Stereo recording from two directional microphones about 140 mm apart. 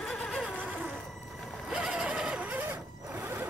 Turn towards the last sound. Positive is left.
turn(degrees=-15)  # may be behind; listen again after turning